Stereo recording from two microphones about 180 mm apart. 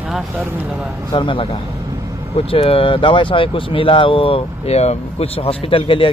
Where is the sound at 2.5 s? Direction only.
30° left (ahead or behind).